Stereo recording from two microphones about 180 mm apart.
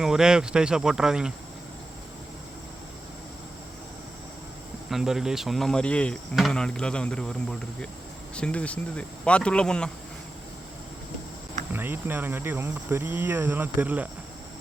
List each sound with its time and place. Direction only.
0.0 s speech: 5° right (ahead or behind)
4.9 s speech: centre (ahead or behind)
11.7 s speech: 10° right (ahead or behind)